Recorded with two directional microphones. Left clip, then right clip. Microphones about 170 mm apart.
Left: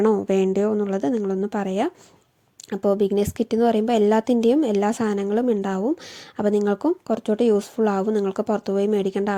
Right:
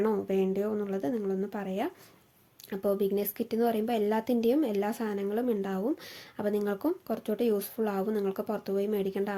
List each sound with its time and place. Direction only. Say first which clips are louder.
0.0 s speech: left 9 dB; 45° left (ahead or behind)